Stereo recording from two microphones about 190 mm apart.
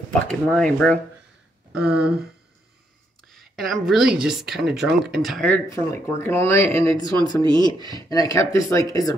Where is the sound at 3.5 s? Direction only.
Centre (ahead or behind).